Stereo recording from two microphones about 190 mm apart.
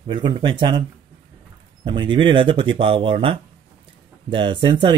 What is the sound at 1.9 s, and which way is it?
Speech, 25° right (ahead or behind).